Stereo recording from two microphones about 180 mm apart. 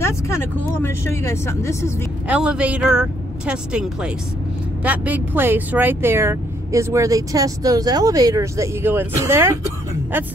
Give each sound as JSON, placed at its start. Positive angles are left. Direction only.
{"t": 0.0, "sound": "speech", "side_deg": 15}
{"t": 2.2, "sound": "speech", "side_deg": -5}